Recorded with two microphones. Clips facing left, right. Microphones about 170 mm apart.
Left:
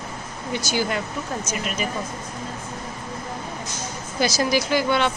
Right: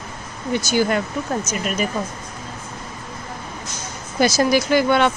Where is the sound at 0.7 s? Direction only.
50° right (ahead or behind).